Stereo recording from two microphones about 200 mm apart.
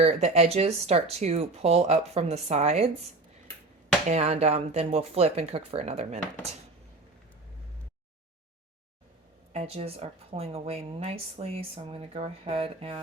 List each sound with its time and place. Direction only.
0.0 s speech: 35° right (ahead or behind)
4.1 s speech: 35° right (ahead or behind)
9.5 s speech: 30° right (ahead or behind)